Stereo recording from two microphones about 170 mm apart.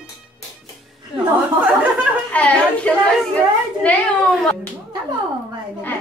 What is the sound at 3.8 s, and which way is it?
Speech, 5° left (ahead or behind).